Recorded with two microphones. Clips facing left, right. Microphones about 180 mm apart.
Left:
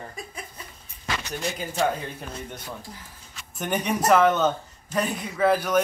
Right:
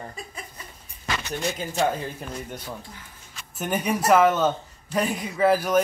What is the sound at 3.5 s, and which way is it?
A man's voice, 5° right (ahead or behind).